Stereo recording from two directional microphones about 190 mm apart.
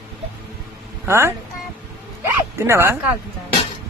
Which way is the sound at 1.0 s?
15° right (ahead or behind).